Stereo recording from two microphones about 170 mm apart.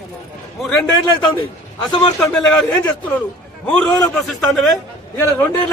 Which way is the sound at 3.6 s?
5° left (ahead or behind).